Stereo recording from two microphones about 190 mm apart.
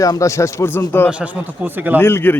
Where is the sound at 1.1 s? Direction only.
5° right (ahead or behind).